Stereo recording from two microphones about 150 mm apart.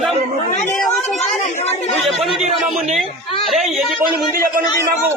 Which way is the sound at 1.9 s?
Centre (ahead or behind).